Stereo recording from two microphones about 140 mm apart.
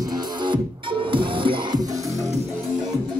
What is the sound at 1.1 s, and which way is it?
Music, 35° right (ahead or behind).